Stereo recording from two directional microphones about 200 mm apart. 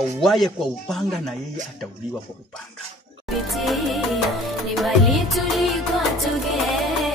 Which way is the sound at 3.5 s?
Centre (ahead or behind).